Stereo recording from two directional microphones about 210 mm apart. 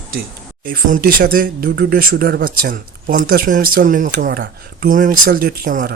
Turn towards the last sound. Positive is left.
turn(degrees=-45)  # may be behind; listen again after turning